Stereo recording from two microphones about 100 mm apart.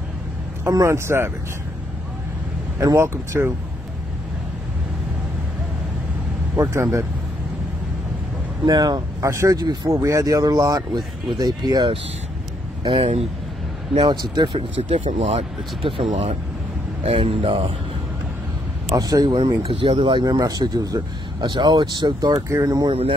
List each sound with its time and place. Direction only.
0.7 s speech: 30° right (ahead or behind)
2.8 s speech: 30° right (ahead or behind)
6.5 s speech: 30° right (ahead or behind)
8.6 s a man's voice: 40° right (ahead or behind)
12.8 s speech: 60° right (ahead or behind); by 13.3 s 75° right (ahead or behind)
14.0 s a man's voice: 45° right (ahead or behind)
14.5 s speech: 65° right (ahead or behind)
18.9 s speech: 40° right (ahead or behind)
19.3 s a man's voice: 65° right (ahead or behind)
22.5 s speech: 35° right (ahead or behind)